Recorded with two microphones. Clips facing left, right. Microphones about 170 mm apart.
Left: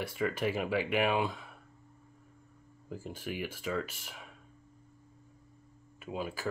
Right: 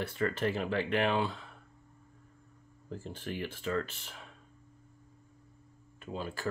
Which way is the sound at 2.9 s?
10° left (ahead or behind).